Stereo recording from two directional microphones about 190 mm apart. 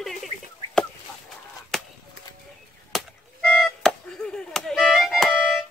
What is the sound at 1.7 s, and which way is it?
Chop, centre (ahead or behind).